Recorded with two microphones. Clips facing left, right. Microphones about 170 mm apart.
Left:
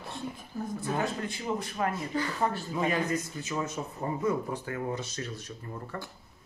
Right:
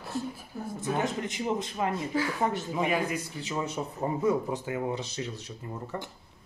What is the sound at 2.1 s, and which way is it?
Speech, 10° right (ahead or behind).